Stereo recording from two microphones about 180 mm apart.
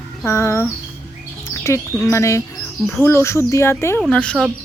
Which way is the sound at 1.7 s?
15° left (ahead or behind).